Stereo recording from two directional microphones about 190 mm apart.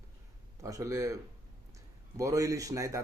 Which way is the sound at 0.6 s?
15° right (ahead or behind).